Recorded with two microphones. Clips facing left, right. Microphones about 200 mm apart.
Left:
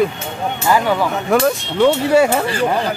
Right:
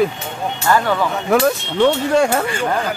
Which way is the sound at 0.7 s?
10° left (ahead or behind).